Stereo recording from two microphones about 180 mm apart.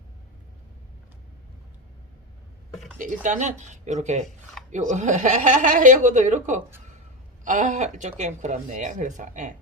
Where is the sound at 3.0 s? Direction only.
45° right (ahead or behind).